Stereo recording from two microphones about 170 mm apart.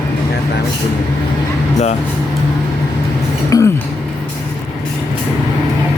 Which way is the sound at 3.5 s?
20° left (ahead or behind).